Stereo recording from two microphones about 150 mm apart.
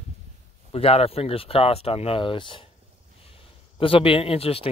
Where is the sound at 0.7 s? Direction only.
40° left (ahead or behind).